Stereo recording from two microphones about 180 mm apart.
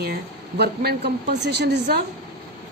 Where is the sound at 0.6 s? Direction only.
65° right (ahead or behind).